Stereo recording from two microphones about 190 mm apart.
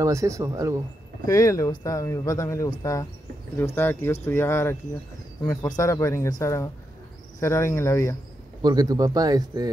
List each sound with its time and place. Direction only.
0.0 s speech: 15° right (ahead or behind)
1.2 s speech: 15° left (ahead or behind)
8.6 s speech: 20° right (ahead or behind)